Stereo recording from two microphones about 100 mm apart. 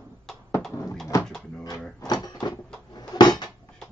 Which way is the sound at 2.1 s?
40° left (ahead or behind).